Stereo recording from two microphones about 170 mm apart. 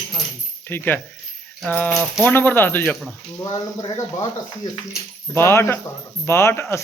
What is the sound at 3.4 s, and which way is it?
Speech, 25° left (ahead or behind).